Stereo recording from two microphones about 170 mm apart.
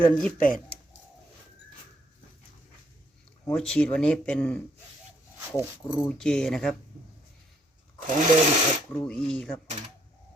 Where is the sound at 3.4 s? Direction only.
5° left (ahead or behind).